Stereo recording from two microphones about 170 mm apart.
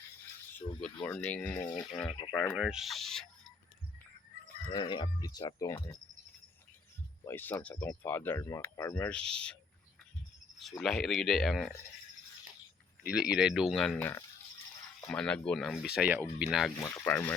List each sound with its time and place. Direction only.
0.7 s a sound: 30° left (ahead or behind)
1.0 s speech: 10° left (ahead or behind)
1.7 s speech: 20° left (ahead or behind)
2.3 s speech: 10° left (ahead or behind)
2.6 s speech: 5° right (ahead or behind)
4.7 s speech: 25° left (ahead or behind)
7.3 s speech: 10° left (ahead or behind)
9.0 s speech: 5° left (ahead or behind)
10.6 s speech: centre (ahead or behind)
13.0 s speech: 5° right (ahead or behind)
17.0 s speech: 10° left (ahead or behind)